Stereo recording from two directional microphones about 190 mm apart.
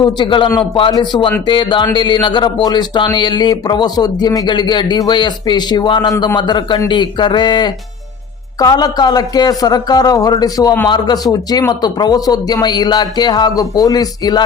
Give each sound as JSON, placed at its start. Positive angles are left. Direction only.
{"t": 0.0, "sound": "speech", "side_deg": 25}